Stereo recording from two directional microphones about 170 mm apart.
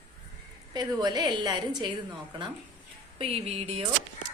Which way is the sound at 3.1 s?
35° right (ahead or behind).